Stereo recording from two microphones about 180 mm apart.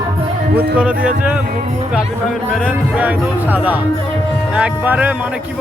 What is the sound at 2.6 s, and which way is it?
Music, 10° right (ahead or behind).